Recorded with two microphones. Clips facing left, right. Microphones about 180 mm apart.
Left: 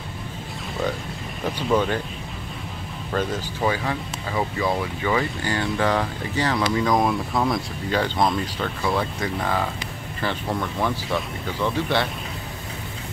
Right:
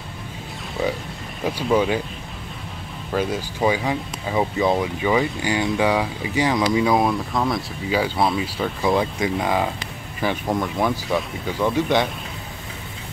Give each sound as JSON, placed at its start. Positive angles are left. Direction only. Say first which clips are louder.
{"t": 1.4, "sound": "speech", "louder": "right 2 dB", "side_deg": -10}
{"t": 3.1, "sound": "speech", "louder": "right 2 dB", "side_deg": -10}